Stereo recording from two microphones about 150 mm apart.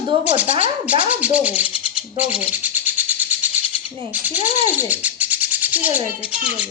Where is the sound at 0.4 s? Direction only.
40° right (ahead or behind).